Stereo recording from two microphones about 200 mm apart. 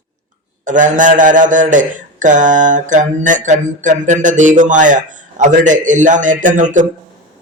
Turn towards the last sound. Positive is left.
turn(degrees=-40)  # may be behind; listen again after turning